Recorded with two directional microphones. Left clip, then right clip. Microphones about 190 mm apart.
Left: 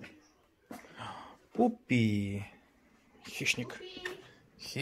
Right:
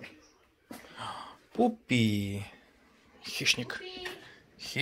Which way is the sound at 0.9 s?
15° left (ahead or behind).